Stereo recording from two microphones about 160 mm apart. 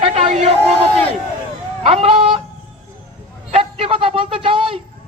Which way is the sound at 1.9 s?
35° right (ahead or behind).